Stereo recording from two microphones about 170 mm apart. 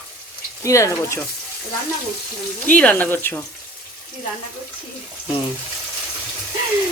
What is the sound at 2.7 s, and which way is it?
Speech, 10° left (ahead or behind).